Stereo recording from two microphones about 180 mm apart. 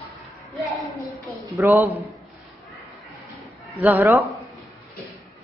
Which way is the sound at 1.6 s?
15° right (ahead or behind).